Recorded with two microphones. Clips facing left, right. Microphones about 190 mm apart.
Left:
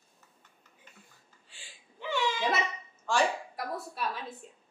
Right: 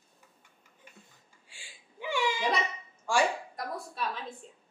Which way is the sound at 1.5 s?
10° right (ahead or behind).